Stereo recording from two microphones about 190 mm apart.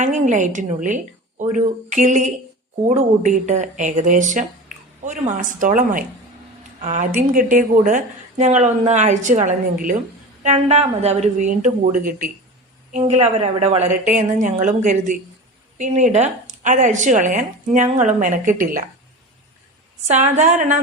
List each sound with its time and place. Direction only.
0.0 s speech: 40° right (ahead or behind)
20.1 s speech: 40° right (ahead or behind)